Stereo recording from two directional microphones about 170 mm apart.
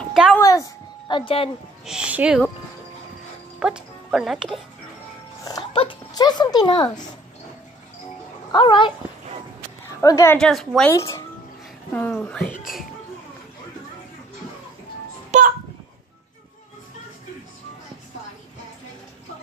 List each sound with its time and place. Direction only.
0.0 s a sound: centre (ahead or behind)
0.4 s a sound: 20° left (ahead or behind)
1.9 s a woman's voice: 5° right (ahead or behind)
3.5 s speech: 5° right (ahead or behind)
5.4 s a child's voice: 20° left (ahead or behind)
8.5 s a child's voice: 30° left (ahead or behind)
9.8 s speech: 20° left (ahead or behind)
10.3 s a woman's voice: 5° left (ahead or behind)
10.9 s speech: 15° left (ahead or behind); by 12.8 s centre (ahead or behind)